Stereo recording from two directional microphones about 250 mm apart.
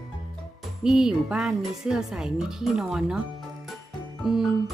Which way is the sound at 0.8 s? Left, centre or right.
Centre.